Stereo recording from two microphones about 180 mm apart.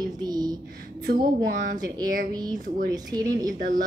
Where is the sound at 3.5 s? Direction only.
45° right (ahead or behind).